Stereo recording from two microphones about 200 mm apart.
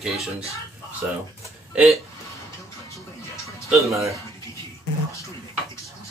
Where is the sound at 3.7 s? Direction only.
Centre (ahead or behind).